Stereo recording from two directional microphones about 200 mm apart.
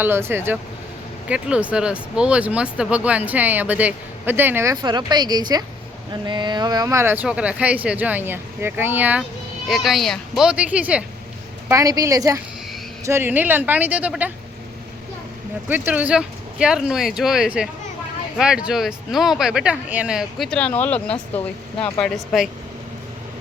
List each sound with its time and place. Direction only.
0.0 s speech: 10° right (ahead or behind)
11.7 s speech: 15° right (ahead or behind)
15.7 s speech: 10° right (ahead or behind)